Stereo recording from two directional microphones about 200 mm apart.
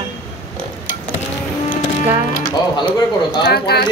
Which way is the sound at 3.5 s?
55° left (ahead or behind).